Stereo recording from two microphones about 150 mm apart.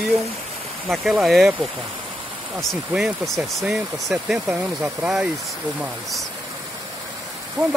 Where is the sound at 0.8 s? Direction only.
Centre (ahead or behind).